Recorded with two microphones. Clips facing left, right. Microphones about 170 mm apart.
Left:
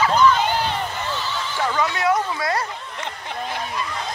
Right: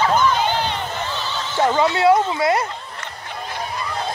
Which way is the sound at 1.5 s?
25° right (ahead or behind).